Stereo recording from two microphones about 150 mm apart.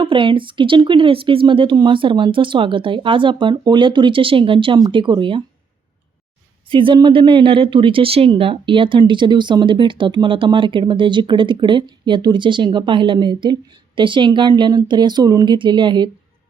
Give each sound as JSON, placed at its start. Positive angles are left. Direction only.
{"t": 0.0, "sound": "a woman's voice", "side_deg": -35}
{"t": 6.7, "sound": "a woman's voice", "side_deg": -35}